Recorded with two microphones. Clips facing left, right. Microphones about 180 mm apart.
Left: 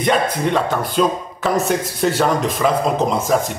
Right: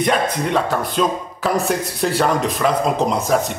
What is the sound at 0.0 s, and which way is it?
Speech, centre (ahead or behind).